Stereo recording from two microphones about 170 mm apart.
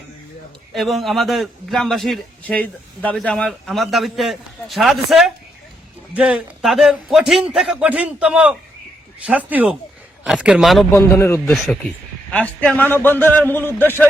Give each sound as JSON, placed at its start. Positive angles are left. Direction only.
{"t": 0.7, "sound": "a man's voice", "side_deg": 0}
{"t": 10.9, "sound": "speech", "side_deg": 15}
{"t": 11.4, "sound": "a man's voice", "side_deg": 0}